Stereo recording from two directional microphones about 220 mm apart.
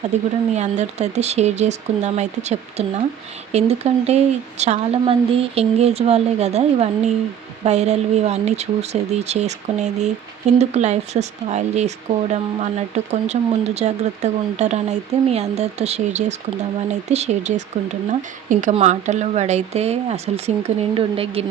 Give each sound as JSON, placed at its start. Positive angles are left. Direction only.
{"t": 0.1, "sound": "speech", "side_deg": -30}
{"t": 13.1, "sound": "speech", "side_deg": -30}